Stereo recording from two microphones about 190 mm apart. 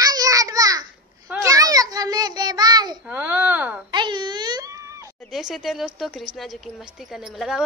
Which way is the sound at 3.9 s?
25° right (ahead or behind).